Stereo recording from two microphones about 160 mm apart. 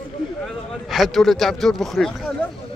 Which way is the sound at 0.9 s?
Centre (ahead or behind).